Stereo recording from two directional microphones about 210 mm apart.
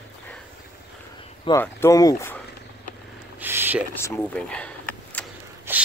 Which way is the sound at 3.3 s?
10° right (ahead or behind).